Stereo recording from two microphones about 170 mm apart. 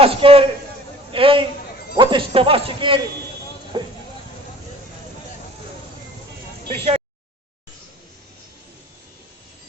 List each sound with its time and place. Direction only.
0.0 s a man's voice: 35° right (ahead or behind)
6.7 s a man's voice: 35° right (ahead or behind)